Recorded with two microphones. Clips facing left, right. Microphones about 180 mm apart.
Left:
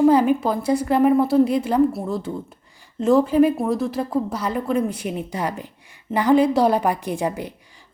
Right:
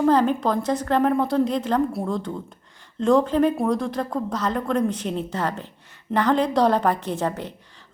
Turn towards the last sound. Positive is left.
turn(degrees=10)  # may be behind; listen again after turning